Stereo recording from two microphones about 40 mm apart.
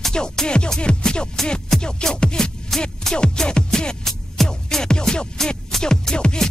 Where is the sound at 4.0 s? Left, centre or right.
Centre.